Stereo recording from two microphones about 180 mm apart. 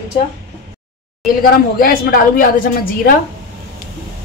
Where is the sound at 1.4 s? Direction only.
55° left (ahead or behind).